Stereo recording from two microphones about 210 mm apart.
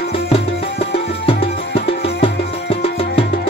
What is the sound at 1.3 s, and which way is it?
Music, 25° left (ahead or behind).